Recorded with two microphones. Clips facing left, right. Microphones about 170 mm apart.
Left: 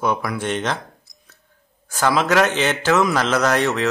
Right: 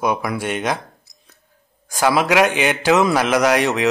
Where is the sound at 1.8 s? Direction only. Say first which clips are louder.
Right 2 dB; 10° right (ahead or behind).